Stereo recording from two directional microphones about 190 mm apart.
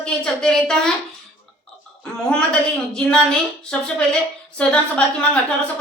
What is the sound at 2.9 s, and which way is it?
A woman's voice, 5° left (ahead or behind).